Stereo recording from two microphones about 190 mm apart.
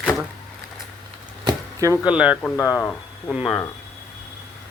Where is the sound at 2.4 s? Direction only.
15° left (ahead or behind).